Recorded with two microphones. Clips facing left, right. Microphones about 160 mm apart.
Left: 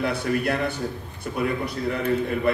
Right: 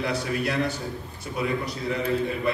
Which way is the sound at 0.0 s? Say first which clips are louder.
Left 3 dB; 55° left (ahead or behind).